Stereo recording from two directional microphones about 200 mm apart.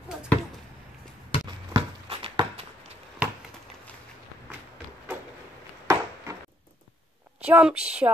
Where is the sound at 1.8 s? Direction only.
30° right (ahead or behind).